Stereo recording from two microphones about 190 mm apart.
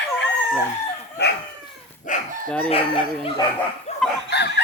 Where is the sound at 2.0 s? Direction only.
45° left (ahead or behind).